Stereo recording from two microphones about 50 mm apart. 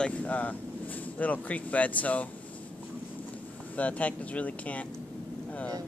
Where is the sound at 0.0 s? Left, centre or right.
Left.